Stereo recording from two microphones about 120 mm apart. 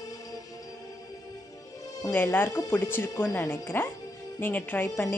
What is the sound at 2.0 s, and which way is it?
Speech, 20° left (ahead or behind).